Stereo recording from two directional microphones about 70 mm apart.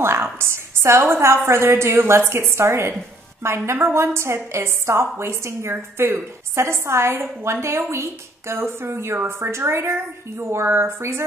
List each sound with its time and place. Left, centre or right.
0.0 s a woman's voice: right